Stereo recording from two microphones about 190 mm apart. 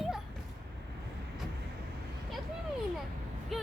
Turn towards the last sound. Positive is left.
turn(degrees=0)  # may be behind; listen again after turning